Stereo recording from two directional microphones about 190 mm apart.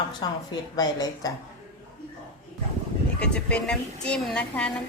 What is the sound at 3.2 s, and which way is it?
A woman's voice, 5° left (ahead or behind).